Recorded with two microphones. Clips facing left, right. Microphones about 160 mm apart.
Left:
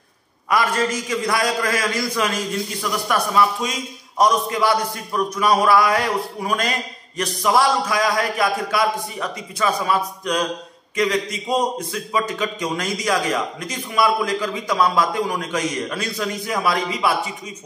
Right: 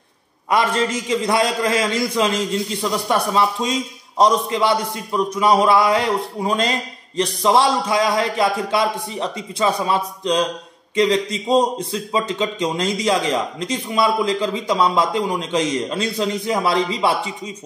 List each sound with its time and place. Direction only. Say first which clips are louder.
0.5 s a man's voice: right 1 dB; 25° right (ahead or behind)